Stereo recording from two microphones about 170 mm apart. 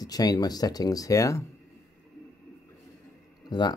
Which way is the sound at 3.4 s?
25° left (ahead or behind).